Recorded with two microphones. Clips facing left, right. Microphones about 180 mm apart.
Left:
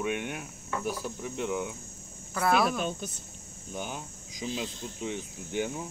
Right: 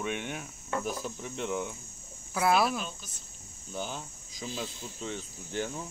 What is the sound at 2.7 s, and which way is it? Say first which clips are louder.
Speech: left 4 dB; 50° left (ahead or behind).